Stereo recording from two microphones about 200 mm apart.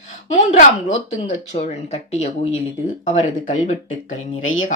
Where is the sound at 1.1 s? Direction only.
35° left (ahead or behind).